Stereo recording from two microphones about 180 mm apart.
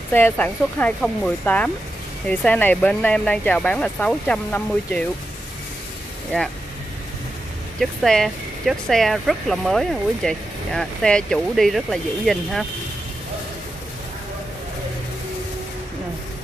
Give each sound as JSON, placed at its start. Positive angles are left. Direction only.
{"t": 0.1, "sound": "speech", "side_deg": 10}
{"t": 7.8, "sound": "speech", "side_deg": 0}